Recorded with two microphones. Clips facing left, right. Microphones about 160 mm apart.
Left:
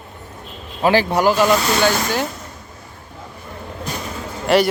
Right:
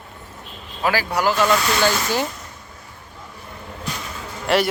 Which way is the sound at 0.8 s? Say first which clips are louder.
Left 6 dB; 25° left (ahead or behind).